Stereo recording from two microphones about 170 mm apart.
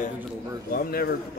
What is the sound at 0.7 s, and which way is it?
Speech, 60° left (ahead or behind).